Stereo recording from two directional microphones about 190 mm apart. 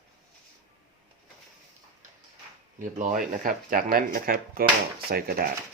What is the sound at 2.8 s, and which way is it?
Speech, 40° right (ahead or behind).